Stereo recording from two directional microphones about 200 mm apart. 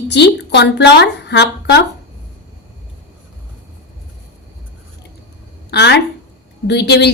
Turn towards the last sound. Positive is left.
turn(degrees=55)  # may be behind; listen again after turning